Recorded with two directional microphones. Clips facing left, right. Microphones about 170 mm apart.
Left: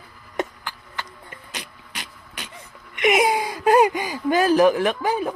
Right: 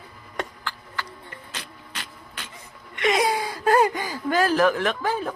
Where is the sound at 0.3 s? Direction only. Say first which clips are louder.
Left 4 dB; 20° left (ahead or behind).